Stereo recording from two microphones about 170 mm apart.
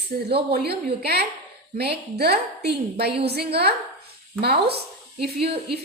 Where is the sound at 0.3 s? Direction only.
70° right (ahead or behind).